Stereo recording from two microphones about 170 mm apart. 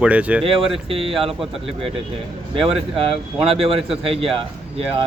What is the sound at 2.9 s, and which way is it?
Speech, 35° right (ahead or behind).